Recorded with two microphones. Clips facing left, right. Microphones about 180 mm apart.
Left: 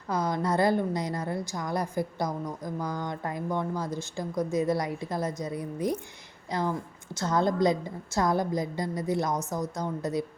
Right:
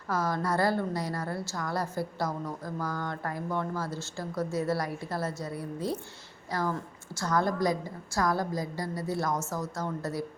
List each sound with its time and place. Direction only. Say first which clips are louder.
0.1 s a woman's voice: left 2 dB; 20° left (ahead or behind)